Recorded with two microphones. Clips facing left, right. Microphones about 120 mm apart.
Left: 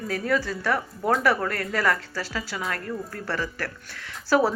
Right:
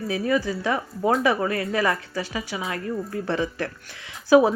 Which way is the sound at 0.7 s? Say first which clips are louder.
Right 3 dB; 5° right (ahead or behind).